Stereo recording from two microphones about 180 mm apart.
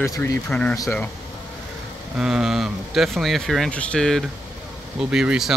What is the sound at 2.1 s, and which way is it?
Speech, 5° right (ahead or behind).